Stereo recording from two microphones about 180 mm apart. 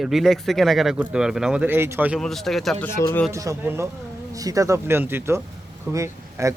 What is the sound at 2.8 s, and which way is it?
Speech, 15° left (ahead or behind).